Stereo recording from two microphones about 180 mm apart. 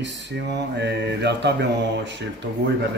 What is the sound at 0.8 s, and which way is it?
Mantra, 70° right (ahead or behind).